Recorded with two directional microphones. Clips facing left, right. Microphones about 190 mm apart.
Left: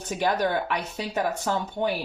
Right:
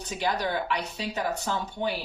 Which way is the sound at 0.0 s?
50° left (ahead or behind).